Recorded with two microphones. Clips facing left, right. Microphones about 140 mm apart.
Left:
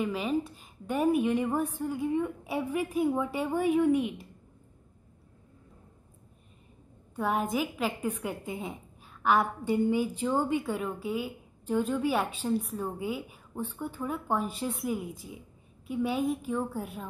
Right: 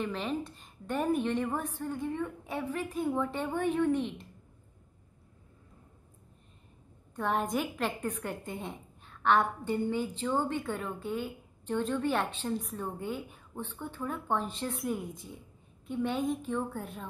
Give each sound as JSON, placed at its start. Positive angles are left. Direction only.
{"t": 0.0, "sound": "a woman's voice", "side_deg": 5}
{"t": 7.2, "sound": "a woman's voice", "side_deg": 5}